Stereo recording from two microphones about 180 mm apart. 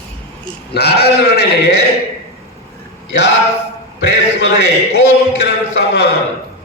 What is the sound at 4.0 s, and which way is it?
A man's voice, 65° left (ahead or behind).